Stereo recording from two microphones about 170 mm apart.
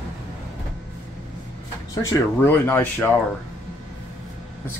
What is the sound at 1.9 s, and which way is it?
Speech, 20° left (ahead or behind).